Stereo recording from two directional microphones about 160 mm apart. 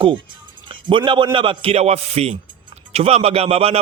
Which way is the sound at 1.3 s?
30° right (ahead or behind).